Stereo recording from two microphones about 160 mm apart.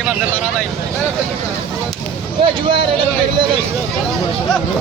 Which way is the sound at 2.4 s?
30° right (ahead or behind).